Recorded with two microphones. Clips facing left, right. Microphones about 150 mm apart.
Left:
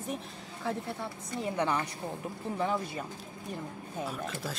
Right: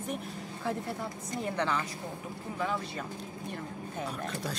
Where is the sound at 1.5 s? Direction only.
15° left (ahead or behind).